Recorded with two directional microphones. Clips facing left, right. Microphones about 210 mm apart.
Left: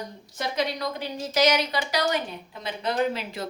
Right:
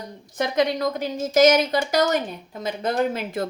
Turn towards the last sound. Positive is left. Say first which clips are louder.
# right 3 dB
turn(degrees=-50)  # may be behind; listen again after turning